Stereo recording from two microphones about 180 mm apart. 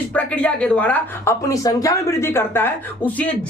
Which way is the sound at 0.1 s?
5° left (ahead or behind).